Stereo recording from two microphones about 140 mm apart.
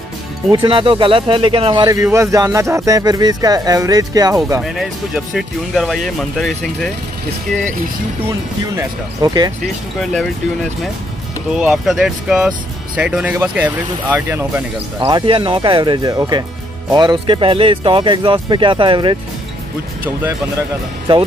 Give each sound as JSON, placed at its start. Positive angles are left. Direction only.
{"t": 0.5, "sound": "speech", "side_deg": -35}
{"t": 2.0, "sound": "speech", "side_deg": -20}
{"t": 4.6, "sound": "speech", "side_deg": -5}
{"t": 8.3, "sound": "speech", "side_deg": -25}
{"t": 9.9, "sound": "speech", "side_deg": 5}
{"t": 15.0, "sound": "speech", "side_deg": -35}